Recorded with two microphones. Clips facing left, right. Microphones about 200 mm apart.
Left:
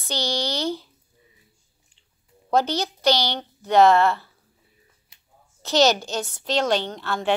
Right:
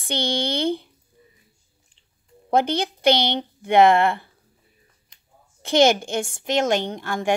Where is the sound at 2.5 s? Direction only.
55° right (ahead or behind).